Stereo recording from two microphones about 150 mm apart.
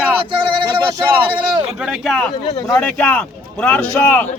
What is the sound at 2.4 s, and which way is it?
Speech, 35° left (ahead or behind).